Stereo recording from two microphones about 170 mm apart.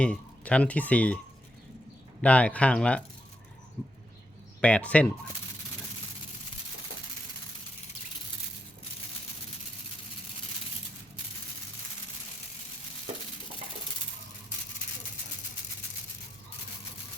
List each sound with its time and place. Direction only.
0.0 s speech: 5° left (ahead or behind)
2.2 s speech: 10° left (ahead or behind)
4.6 s speech: 5° left (ahead or behind)